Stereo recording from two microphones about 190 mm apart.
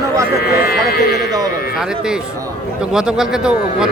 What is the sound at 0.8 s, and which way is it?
Speech, 55° left (ahead or behind).